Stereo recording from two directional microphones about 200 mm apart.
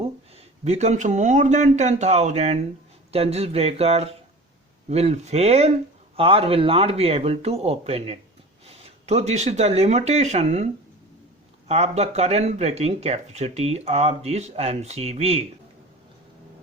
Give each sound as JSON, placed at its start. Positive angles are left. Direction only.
{"t": 0.6, "sound": "speech", "side_deg": -35}
{"t": 11.7, "sound": "speech", "side_deg": -30}